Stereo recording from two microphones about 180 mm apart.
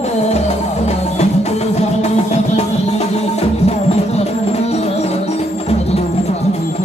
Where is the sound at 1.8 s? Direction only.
35° left (ahead or behind).